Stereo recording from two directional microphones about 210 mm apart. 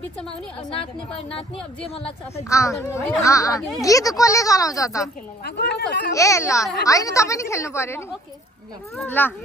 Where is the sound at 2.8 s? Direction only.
15° left (ahead or behind).